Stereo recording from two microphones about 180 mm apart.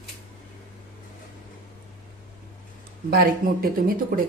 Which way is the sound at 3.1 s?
55° right (ahead or behind).